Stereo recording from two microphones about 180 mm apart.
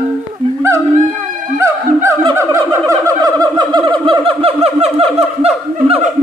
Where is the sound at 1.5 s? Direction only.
15° right (ahead or behind).